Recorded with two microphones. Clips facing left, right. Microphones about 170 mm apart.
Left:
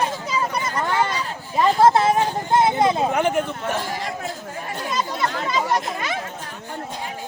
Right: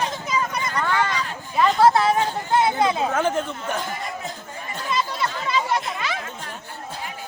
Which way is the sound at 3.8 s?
90° left.